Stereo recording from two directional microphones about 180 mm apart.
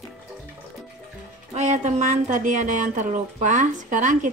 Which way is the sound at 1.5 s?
40° right (ahead or behind).